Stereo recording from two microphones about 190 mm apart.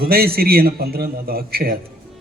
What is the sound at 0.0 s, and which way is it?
Speech, 55° right (ahead or behind).